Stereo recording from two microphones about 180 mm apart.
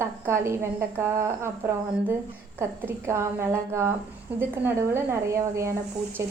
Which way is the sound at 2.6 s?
15° right (ahead or behind).